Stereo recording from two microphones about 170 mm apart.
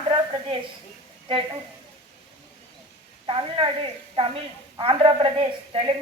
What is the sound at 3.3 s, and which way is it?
A woman's voice, 30° right (ahead or behind).